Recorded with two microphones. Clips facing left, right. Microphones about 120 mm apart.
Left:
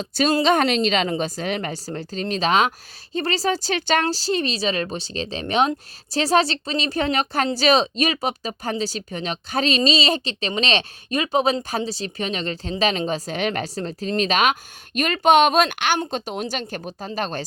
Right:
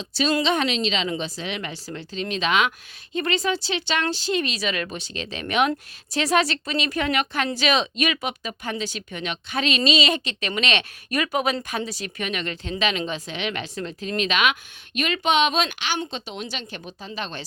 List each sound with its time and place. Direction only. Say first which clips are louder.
0.0 s a woman's voice: left 3 dB; 45° left (ahead or behind)